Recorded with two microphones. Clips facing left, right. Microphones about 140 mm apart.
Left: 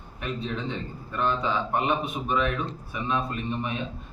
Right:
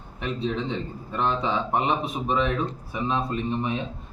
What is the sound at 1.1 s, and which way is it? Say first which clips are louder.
A man's voice: right 1 dB; 30° right (ahead or behind).